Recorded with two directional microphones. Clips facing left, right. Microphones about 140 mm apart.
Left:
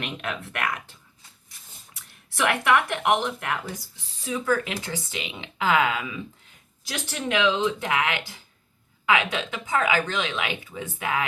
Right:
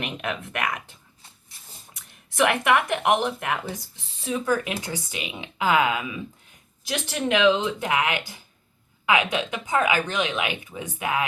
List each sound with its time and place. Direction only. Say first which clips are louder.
0.0 s speech: right 2 dB; 15° right (ahead or behind)
1.9 s speech: right 1 dB; 20° right (ahead or behind)